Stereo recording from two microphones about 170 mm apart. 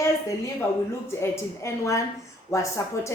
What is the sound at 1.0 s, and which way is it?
A woman's voice, 15° left (ahead or behind).